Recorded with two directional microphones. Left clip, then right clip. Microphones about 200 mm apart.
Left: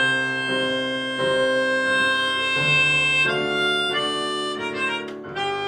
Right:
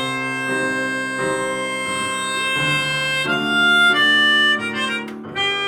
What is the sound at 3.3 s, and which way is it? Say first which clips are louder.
Harmonica: right 6 dB; 10° right (ahead or behind).